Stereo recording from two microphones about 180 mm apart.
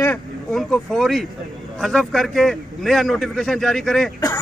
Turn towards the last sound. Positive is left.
turn(degrees=0)  # may be behind; listen again after turning